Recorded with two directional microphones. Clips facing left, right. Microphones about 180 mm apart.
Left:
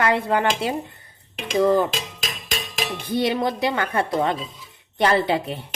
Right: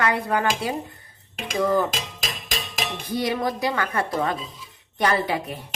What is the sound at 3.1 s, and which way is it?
A child's voice, 25° left (ahead or behind).